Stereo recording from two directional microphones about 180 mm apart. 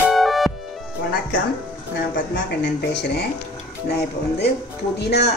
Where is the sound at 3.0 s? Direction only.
65° left (ahead or behind).